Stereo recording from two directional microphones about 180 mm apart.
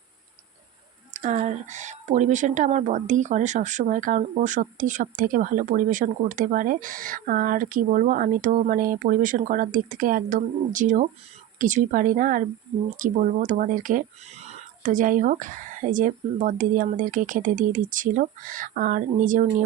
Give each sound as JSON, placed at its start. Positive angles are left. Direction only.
{"t": 1.1, "sound": "speech", "side_deg": -40}